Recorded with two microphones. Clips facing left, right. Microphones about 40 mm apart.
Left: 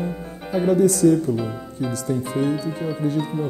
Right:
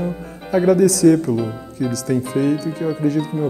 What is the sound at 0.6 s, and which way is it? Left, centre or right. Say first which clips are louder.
Speech: right 3 dB; right.